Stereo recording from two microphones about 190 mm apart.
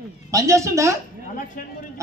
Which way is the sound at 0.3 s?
15° right (ahead or behind).